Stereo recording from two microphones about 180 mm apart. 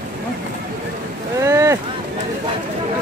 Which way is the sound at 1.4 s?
15° right (ahead or behind).